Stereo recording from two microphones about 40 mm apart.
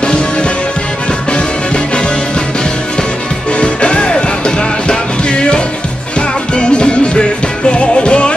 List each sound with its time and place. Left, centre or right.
0.0 s music: left
3.5 s music: left